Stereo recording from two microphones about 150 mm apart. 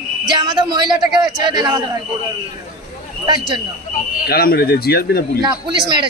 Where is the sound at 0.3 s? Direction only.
30° right (ahead or behind).